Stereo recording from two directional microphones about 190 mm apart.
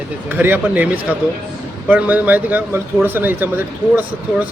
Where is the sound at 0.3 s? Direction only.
10° right (ahead or behind).